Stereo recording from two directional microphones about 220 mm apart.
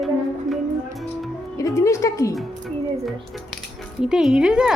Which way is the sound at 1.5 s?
15° left (ahead or behind).